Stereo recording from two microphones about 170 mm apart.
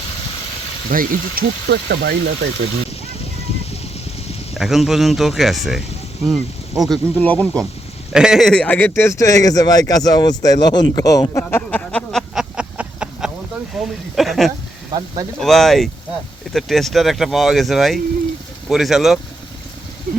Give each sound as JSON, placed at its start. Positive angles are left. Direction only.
{"t": 0.9, "sound": "speech", "side_deg": -55}
{"t": 4.5, "sound": "speech", "side_deg": 0}
{"t": 8.1, "sound": "speech", "side_deg": -5}
{"t": 12.3, "sound": "a sound", "side_deg": -5}
{"t": 13.7, "sound": "speech", "side_deg": 0}